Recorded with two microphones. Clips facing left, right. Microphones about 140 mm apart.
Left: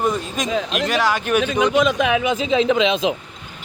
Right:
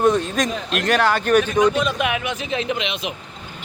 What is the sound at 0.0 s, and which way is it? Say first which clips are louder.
Speech: right 4 dB; centre (ahead or behind).